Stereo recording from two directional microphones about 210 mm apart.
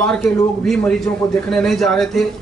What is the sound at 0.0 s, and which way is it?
A man's voice, 5° left (ahead or behind).